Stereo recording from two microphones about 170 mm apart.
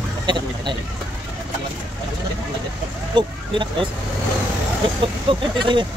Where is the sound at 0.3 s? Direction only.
25° right (ahead or behind).